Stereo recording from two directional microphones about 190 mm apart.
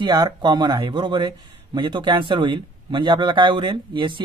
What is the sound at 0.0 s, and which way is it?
Speech, 20° right (ahead or behind).